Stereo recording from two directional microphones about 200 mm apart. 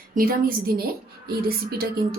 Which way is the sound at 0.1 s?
45° right (ahead or behind).